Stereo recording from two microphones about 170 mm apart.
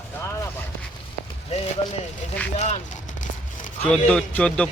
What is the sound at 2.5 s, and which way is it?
Speech, 45° left (ahead or behind).